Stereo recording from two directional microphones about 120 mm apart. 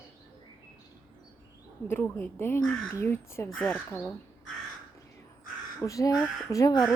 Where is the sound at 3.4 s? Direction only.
5° left (ahead or behind).